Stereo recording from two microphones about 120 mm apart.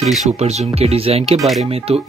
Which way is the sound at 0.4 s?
60° right (ahead or behind).